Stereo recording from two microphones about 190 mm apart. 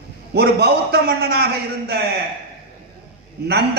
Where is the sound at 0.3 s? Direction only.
60° right (ahead or behind).